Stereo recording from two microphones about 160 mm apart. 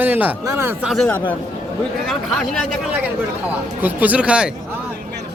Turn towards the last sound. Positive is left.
turn(degrees=-5)  # may be behind; listen again after turning